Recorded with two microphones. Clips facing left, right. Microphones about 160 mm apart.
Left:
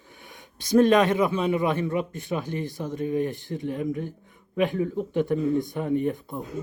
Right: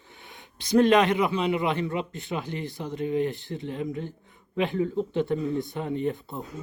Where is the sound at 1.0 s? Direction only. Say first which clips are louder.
Left 1 dB; 20° right (ahead or behind).